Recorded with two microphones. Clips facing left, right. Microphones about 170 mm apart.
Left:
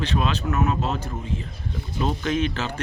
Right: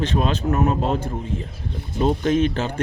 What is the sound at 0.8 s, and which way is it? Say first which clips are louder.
A man's voice: right 5 dB; 50° right (ahead or behind).